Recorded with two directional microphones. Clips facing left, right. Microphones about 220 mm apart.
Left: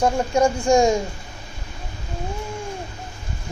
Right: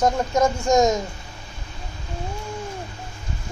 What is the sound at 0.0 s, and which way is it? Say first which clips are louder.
Speech: left 1 dB; 10° left (ahead or behind).